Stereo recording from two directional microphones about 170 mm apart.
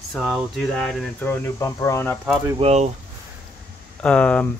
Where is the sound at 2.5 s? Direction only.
40° right (ahead or behind).